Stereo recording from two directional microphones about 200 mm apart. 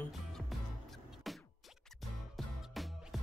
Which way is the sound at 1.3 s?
Centre (ahead or behind).